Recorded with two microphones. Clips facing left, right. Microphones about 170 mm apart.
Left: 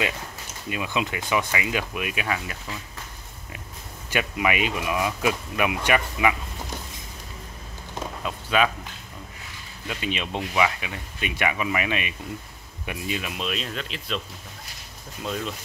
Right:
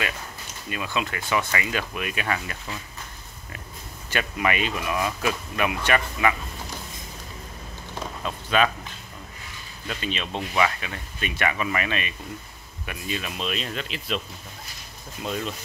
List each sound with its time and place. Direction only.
0.7 s speech: 15° left (ahead or behind)
4.1 s speech: 10° left (ahead or behind)
8.2 s speech: 10° left (ahead or behind)
9.8 s speech: 15° left (ahead or behind)
13.4 s speech: centre (ahead or behind)
15.2 s speech: 5° right (ahead or behind)